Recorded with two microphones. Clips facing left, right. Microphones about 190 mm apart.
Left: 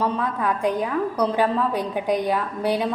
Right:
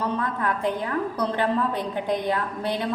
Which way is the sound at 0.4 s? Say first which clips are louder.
Left 5 dB; 15° left (ahead or behind).